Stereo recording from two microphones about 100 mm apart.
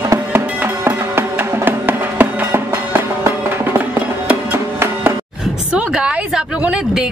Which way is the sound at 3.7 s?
20° right (ahead or behind).